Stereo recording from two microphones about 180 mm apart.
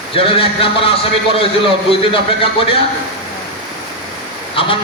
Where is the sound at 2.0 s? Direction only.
30° left (ahead or behind).